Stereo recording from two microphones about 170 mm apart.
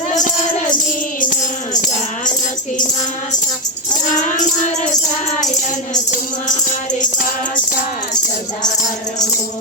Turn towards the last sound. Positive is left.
turn(degrees=55)  # may be behind; listen again after turning